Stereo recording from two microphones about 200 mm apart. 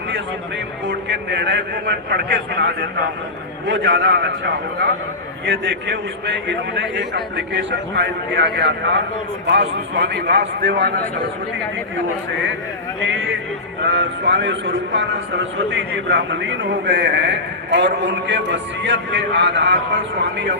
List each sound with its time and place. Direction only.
0.9 s a man's voice: 60° right (ahead or behind)
5.5 s a man's voice: 60° right (ahead or behind)
13.1 s a man's voice: 70° right (ahead or behind)